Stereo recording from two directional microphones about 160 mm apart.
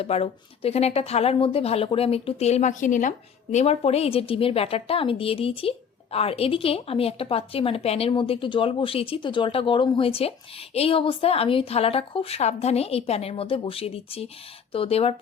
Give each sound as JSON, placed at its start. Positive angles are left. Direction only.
{"t": 0.0, "sound": "speech", "side_deg": 40}